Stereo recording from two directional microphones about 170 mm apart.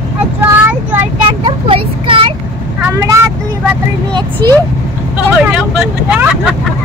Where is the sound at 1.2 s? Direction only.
30° right (ahead or behind).